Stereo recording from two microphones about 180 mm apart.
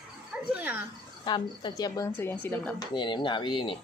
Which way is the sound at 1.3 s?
25° left (ahead or behind).